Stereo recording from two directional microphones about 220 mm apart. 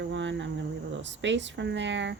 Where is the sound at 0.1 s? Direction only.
55° right (ahead or behind).